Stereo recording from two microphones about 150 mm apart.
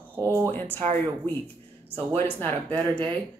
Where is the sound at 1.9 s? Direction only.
15° left (ahead or behind).